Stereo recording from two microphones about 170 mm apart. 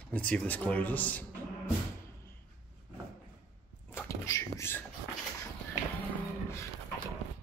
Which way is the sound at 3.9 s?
15° left (ahead or behind).